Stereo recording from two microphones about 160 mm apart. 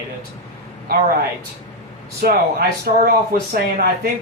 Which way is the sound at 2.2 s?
65° right (ahead or behind).